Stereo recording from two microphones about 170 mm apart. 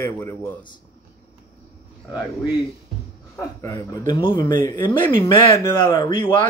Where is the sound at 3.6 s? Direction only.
20° left (ahead or behind).